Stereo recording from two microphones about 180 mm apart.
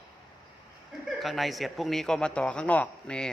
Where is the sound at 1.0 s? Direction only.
Centre (ahead or behind).